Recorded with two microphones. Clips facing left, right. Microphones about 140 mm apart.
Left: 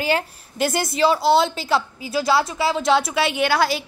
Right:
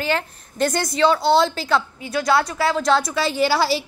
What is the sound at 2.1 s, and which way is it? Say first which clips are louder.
Speech: even; 30° left (ahead or behind).